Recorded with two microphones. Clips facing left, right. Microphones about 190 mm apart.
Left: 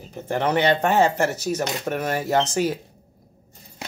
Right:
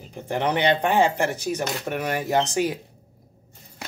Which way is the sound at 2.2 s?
15° right (ahead or behind).